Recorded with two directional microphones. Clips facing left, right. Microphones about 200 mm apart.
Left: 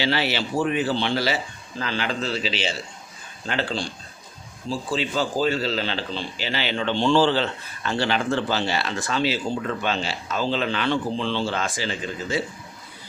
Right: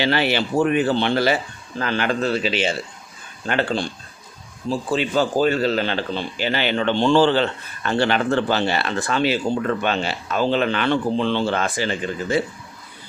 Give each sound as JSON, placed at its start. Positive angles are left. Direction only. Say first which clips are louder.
{"t": 0.0, "sound": "a man's voice", "louder": "right 4 dB", "side_deg": -55}
{"t": 4.9, "sound": "speech", "louder": "right 5 dB", "side_deg": -55}